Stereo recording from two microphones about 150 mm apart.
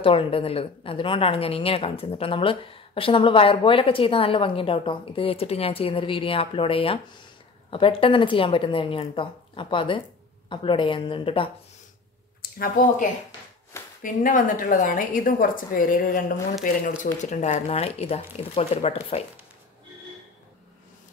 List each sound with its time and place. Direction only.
0.0 s a woman's voice: 35° left (ahead or behind)
12.4 s a sound: 75° left (ahead or behind)
14.0 s a woman's voice: 60° left (ahead or behind); by 19.2 s 45° left (ahead or behind)